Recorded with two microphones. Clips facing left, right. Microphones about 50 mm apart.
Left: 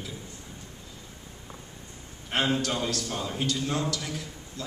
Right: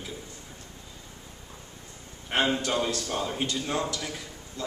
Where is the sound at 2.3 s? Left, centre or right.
Centre.